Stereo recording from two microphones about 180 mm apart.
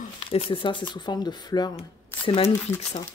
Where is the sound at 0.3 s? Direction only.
30° left (ahead or behind).